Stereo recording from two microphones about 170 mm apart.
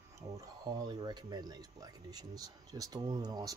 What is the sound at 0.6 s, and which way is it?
Speech, 25° right (ahead or behind).